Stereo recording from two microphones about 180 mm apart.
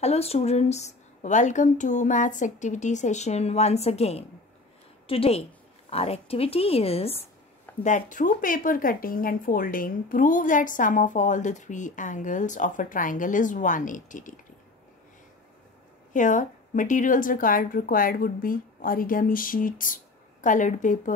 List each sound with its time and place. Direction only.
0.0 s a woman's voice: 35° left (ahead or behind)
7.8 s speech: 45° left (ahead or behind)
16.1 s speech: 45° left (ahead or behind)